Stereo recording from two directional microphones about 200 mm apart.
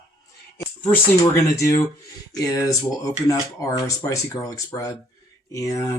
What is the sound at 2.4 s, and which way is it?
Speech, 15° left (ahead or behind).